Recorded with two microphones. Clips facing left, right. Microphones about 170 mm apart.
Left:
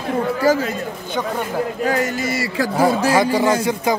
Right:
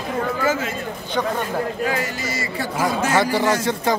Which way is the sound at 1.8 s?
45° left (ahead or behind).